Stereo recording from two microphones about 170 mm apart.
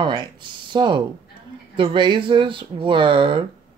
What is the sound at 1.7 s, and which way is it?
Speech, 30° right (ahead or behind).